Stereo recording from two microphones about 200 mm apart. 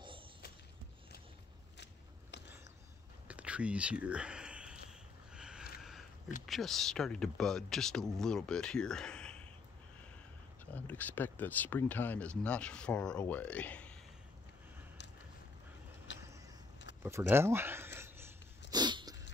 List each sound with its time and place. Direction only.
3.3 s whispering: 5° right (ahead or behind)
5.3 s a sound: 5° right (ahead or behind)
6.4 s speech: centre (ahead or behind)
10.6 s speech: 10° left (ahead or behind)
16.1 s vehicle: 70° left (ahead or behind)
17.0 s a sound: 10° right (ahead or behind)
18.7 s dog: 20° right (ahead or behind)